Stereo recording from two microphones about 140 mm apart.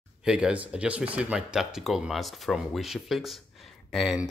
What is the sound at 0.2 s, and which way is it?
Speech, 5° right (ahead or behind).